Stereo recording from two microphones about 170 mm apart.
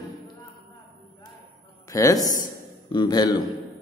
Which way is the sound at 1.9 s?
20° left (ahead or behind).